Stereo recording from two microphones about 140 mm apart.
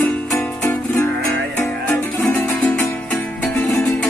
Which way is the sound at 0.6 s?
15° left (ahead or behind).